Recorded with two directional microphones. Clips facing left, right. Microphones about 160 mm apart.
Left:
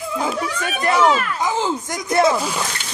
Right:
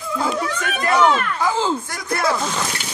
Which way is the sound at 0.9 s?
5° left (ahead or behind).